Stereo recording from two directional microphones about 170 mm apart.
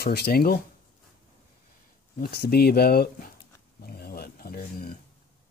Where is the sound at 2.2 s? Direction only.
70° left (ahead or behind).